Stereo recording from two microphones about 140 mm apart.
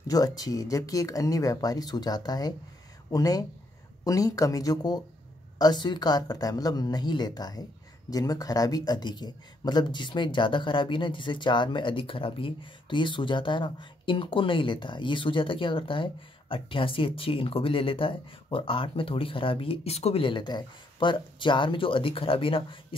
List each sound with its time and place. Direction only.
0.0 s speech: 25° left (ahead or behind)